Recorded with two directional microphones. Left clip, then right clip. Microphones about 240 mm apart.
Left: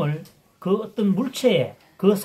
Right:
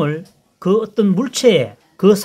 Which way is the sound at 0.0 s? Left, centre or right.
Right.